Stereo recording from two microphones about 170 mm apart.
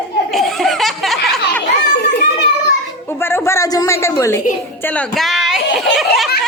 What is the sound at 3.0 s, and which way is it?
A woman's voice, 15° left (ahead or behind).